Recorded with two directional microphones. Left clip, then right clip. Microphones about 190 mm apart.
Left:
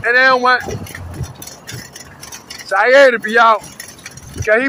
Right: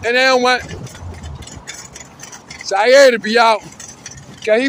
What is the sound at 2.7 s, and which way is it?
Speech, 50° right (ahead or behind).